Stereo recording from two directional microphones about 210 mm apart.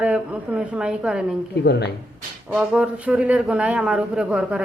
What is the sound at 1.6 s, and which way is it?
Speech, 50° left (ahead or behind).